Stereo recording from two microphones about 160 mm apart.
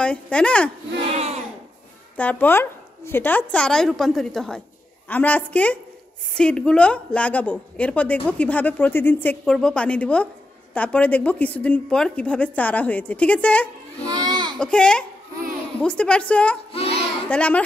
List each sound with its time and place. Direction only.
0.0 s a woman's voice: 5° left (ahead or behind)
1.0 s a sound: 40° right (ahead or behind)
2.1 s a woman's voice: 10° left (ahead or behind)
14.0 s baby cry: 25° right (ahead or behind)
14.6 s a woman's voice: 5° left (ahead or behind)
16.7 s a sound: 40° left (ahead or behind)
17.3 s a woman's voice: 10° left (ahead or behind)